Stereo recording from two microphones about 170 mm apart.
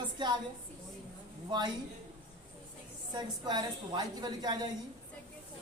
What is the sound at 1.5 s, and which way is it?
Speech, 25° right (ahead or behind).